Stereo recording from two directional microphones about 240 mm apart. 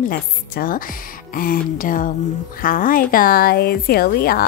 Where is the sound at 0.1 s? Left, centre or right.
Left.